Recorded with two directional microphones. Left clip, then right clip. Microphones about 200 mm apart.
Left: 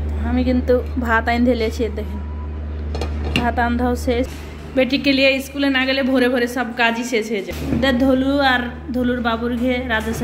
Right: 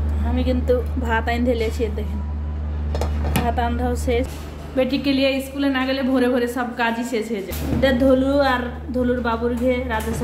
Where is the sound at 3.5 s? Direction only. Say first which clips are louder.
Left 4 dB; centre (ahead or behind).